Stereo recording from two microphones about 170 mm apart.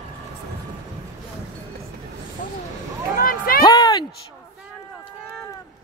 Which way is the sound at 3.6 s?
25° left (ahead or behind).